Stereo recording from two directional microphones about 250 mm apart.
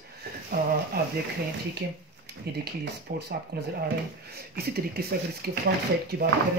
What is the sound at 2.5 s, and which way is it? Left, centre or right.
Speech, right.